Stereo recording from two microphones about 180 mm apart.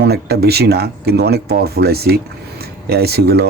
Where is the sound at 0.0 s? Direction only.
65° right (ahead or behind).